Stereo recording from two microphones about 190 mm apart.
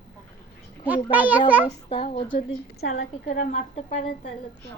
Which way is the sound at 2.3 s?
45° left (ahead or behind).